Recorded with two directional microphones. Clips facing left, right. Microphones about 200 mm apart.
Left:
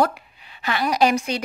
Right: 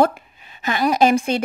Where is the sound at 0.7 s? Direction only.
45° right (ahead or behind).